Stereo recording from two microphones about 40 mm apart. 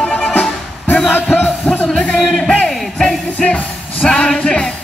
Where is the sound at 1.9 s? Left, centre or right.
Centre.